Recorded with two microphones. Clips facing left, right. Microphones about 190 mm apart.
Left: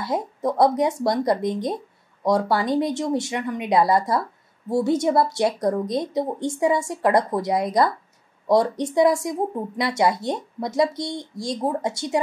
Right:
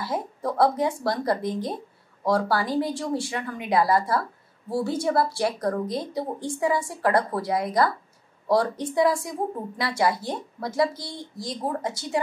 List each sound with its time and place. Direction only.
0.0 s speech: 20° left (ahead or behind)